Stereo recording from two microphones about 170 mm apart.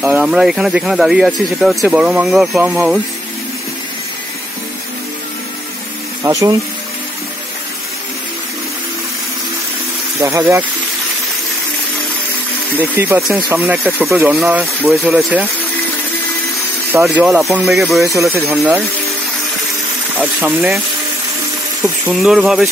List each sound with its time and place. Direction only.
0.0 s speech: 5° right (ahead or behind)
6.2 s speech: 15° right (ahead or behind)
10.2 s speech: 15° right (ahead or behind)
12.7 s speech: 10° right (ahead or behind)
17.0 s speech: centre (ahead or behind)
18.0 s speech: 20° right (ahead or behind)
20.2 s speech: 10° right (ahead or behind)
22.1 s speech: centre (ahead or behind)